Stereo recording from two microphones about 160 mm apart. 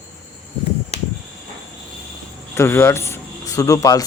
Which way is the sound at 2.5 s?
15° left (ahead or behind).